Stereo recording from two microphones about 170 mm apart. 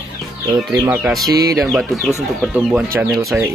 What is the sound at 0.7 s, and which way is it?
Speech, 10° right (ahead or behind).